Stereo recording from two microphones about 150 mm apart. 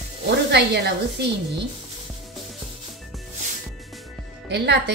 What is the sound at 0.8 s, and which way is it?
Speech, 90° right.